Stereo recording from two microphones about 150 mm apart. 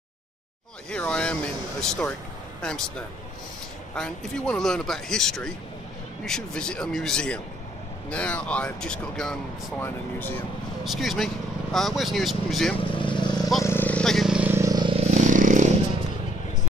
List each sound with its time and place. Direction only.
0.8 s speech: 10° left (ahead or behind)
3.9 s speech: 5° left (ahead or behind)
9.8 s speech: 15° left (ahead or behind)
10.8 s speech: centre (ahead or behind)
12.7 s vehicle: 35° left (ahead or behind)
13.7 s vehicle: 10° left (ahead or behind); by 15.0 s 25° right (ahead or behind)
15.0 s vehicle: 50° right (ahead or behind)